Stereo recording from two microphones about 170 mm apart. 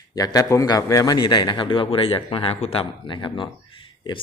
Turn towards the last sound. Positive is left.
turn(degrees=30)  # may be behind; listen again after turning